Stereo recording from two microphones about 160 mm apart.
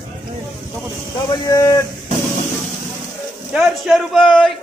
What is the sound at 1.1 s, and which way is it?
Speech, 20° left (ahead or behind).